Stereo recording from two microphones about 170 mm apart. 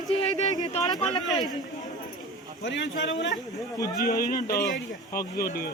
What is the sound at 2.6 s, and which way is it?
Speech, 90° left.